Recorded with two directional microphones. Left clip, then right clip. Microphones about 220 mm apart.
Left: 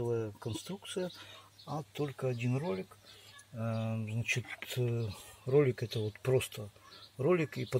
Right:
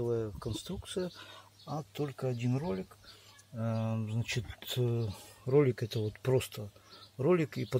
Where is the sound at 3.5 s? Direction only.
15° right (ahead or behind).